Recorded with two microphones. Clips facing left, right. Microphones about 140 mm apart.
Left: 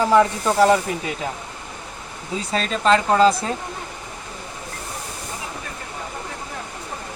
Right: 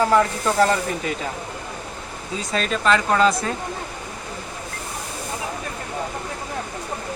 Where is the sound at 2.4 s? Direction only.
30° left (ahead or behind).